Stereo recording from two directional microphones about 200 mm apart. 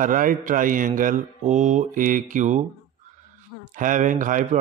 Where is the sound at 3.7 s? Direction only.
40° right (ahead or behind).